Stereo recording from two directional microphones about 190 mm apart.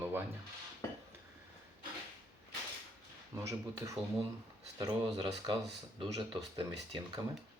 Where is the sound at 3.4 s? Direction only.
15° right (ahead or behind).